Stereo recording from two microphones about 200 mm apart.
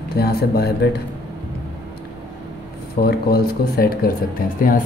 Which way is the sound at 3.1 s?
50° left (ahead or behind).